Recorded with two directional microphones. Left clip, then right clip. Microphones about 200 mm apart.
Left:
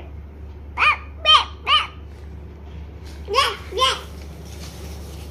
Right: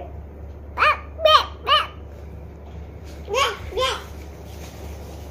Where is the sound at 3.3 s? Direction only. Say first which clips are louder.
Left 2 dB; 50° left (ahead or behind).